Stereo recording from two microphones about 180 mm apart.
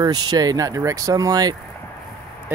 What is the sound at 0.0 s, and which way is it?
Speech, 20° right (ahead or behind).